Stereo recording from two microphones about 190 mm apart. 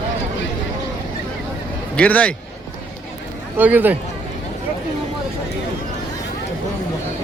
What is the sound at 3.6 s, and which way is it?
Speech, 10° right (ahead or behind).